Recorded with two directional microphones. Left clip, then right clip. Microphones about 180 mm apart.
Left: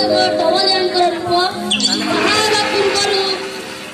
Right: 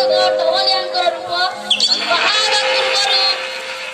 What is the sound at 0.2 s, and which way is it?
Music, 35° left (ahead or behind).